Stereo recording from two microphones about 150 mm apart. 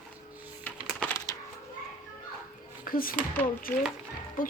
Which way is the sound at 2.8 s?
70° left (ahead or behind).